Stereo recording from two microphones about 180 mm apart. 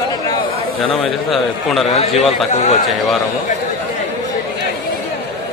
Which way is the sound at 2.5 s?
35° left (ahead or behind).